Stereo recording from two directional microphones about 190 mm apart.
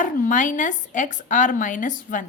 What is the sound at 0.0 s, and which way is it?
Speech, 40° left (ahead or behind).